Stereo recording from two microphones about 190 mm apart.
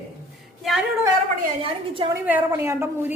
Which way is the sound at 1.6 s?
30° right (ahead or behind).